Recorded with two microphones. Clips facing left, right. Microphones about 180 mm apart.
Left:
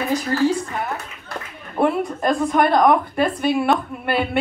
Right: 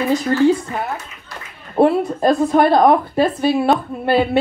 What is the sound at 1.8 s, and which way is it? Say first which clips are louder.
Speech: right 5 dB; 30° right (ahead or behind).